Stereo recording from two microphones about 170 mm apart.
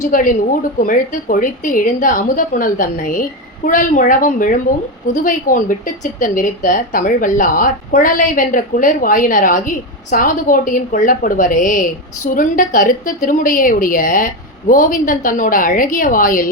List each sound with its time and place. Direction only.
0.0 s a woman's voice: 50° left (ahead or behind)